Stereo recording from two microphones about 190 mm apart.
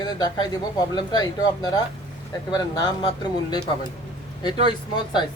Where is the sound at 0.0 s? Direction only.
20° left (ahead or behind).